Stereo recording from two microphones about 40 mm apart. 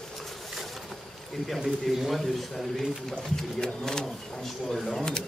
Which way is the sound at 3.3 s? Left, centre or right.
Centre.